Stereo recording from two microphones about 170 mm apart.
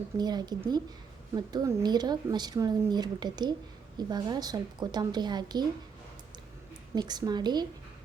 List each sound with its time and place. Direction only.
0.2 s speech: 25° right (ahead or behind)
6.9 s speech: 25° right (ahead or behind)